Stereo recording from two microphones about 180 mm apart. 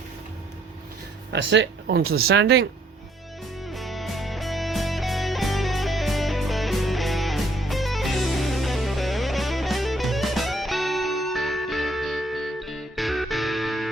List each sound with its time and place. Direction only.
1.3 s speech: 80° right
3.7 s music: centre (ahead or behind)